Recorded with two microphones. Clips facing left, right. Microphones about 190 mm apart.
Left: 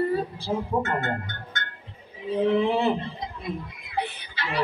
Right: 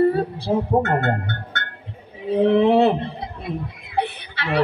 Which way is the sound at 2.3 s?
65° right (ahead or behind).